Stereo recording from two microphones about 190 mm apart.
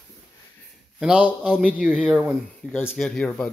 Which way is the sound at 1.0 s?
5° right (ahead or behind).